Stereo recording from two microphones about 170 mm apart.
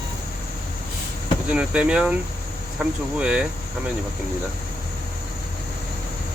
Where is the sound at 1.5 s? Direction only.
5° right (ahead or behind).